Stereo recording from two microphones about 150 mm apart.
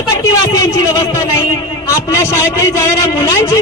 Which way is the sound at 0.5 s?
25° left (ahead or behind).